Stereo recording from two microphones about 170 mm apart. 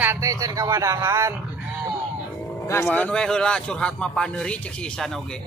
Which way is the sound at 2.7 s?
10° left (ahead or behind).